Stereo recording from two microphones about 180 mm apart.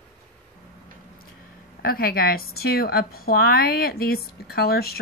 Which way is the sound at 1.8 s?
55° left (ahead or behind).